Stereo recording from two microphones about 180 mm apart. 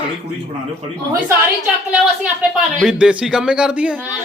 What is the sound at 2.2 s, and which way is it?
A man's voice, centre (ahead or behind).